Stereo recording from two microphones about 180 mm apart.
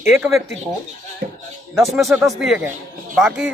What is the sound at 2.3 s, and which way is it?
Speech, 5° right (ahead or behind).